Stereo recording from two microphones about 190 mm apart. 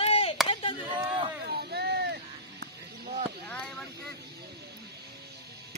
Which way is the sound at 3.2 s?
5° left (ahead or behind).